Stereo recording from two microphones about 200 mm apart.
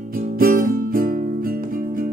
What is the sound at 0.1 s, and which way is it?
Music, 45° right (ahead or behind).